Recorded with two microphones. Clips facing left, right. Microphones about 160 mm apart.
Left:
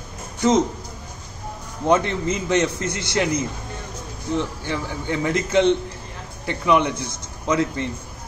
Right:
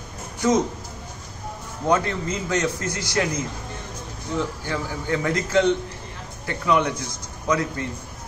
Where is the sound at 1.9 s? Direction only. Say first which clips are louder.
Left 3 dB; 20° left (ahead or behind).